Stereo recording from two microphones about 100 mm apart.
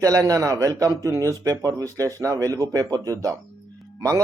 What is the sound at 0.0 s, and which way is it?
A man's voice, 35° right (ahead or behind).